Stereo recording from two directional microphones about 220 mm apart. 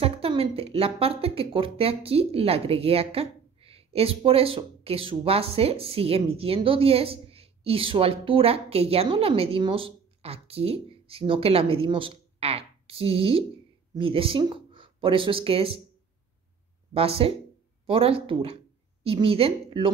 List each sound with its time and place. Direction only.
0.0 s speech: 25° right (ahead or behind)
16.9 s speech: 25° right (ahead or behind)